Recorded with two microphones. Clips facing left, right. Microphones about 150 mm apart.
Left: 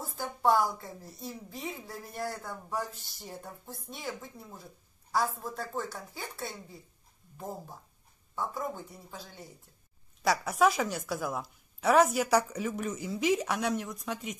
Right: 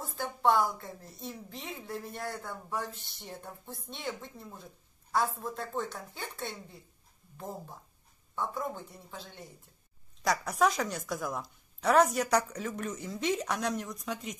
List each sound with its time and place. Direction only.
0.0 s a woman's voice: 5° left (ahead or behind)